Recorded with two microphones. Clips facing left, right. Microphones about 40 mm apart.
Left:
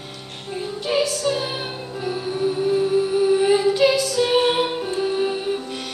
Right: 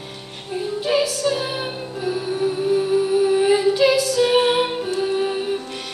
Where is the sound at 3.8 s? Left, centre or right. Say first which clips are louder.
Right 1 dB; right.